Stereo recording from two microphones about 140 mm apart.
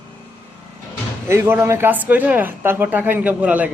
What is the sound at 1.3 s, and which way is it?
A man's voice, 20° right (ahead or behind).